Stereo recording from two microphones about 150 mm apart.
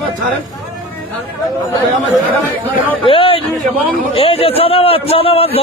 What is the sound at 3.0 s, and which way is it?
A man's voice, 35° left (ahead or behind).